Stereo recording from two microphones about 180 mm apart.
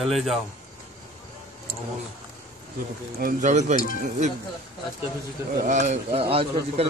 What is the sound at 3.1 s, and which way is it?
A man's voice, 45° right (ahead or behind).